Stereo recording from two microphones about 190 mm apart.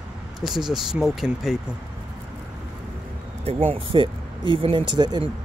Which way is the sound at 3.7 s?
25° right (ahead or behind).